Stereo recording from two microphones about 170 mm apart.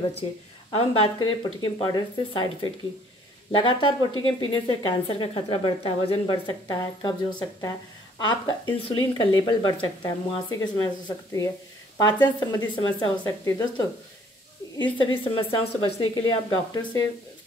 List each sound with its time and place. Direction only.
0.7 s a woman's voice: 30° left (ahead or behind)
15.0 s a woman's voice: 30° left (ahead or behind)